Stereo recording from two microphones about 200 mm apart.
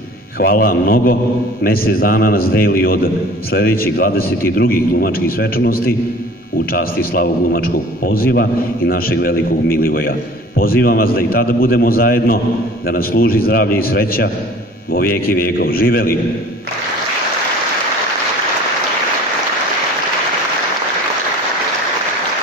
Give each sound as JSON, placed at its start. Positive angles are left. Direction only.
{"t": 0.4, "sound": "a man's voice", "side_deg": 45}